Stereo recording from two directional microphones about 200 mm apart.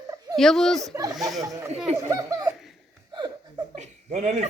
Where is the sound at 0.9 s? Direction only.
20° right (ahead or behind).